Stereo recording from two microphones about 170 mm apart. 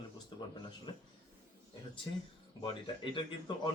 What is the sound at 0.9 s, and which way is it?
Speech, 25° left (ahead or behind).